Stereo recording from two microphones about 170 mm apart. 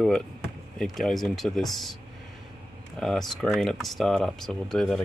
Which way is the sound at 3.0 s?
Centre (ahead or behind).